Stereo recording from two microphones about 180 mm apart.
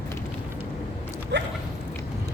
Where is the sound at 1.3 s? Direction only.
75° right (ahead or behind).